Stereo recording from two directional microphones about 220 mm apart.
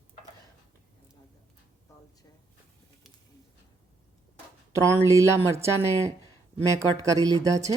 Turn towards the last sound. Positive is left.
turn(degrees=-15)  # may be behind; listen again after turning